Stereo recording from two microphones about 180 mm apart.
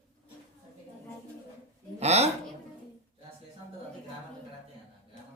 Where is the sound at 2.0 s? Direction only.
35° right (ahead or behind).